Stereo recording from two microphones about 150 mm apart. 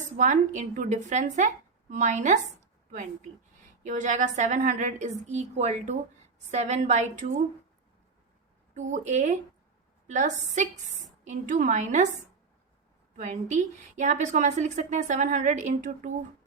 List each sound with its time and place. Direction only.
0.2 s a woman's voice: 55° right (ahead or behind)
3.8 s a woman's voice: 60° right (ahead or behind)
8.7 s a woman's voice: 55° right (ahead or behind)
13.1 s a woman's voice: 55° right (ahead or behind)